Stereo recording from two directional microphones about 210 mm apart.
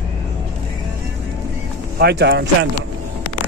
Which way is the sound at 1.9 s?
50° right (ahead or behind).